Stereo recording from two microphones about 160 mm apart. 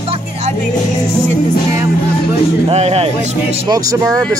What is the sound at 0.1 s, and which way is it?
Music, 45° right (ahead or behind).